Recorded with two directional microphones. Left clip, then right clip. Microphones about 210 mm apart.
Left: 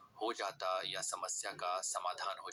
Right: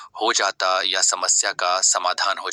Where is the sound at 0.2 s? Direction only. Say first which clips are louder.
Right 19 dB; 45° right (ahead or behind).